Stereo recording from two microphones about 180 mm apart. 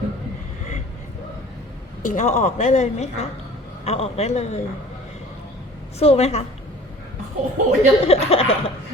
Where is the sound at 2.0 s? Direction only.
45° left (ahead or behind).